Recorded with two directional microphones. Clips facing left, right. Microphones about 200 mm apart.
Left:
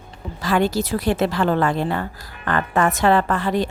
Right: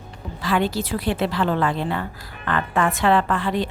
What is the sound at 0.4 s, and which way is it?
A woman's voice, 45° left (ahead or behind).